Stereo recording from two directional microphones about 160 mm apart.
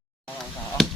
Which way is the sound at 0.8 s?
Centre (ahead or behind).